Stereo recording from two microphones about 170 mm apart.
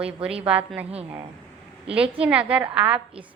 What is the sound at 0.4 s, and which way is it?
Speech, 5° right (ahead or behind).